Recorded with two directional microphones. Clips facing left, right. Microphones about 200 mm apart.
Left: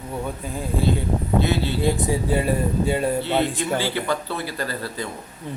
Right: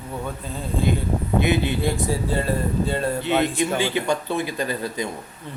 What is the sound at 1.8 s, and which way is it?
Speech, 15° left (ahead or behind).